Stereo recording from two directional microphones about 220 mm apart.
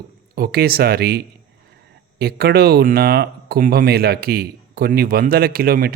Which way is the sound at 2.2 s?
45° right (ahead or behind).